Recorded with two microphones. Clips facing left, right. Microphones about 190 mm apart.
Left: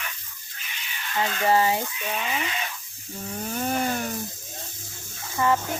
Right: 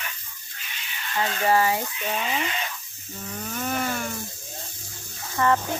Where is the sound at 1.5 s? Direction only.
20° left (ahead or behind).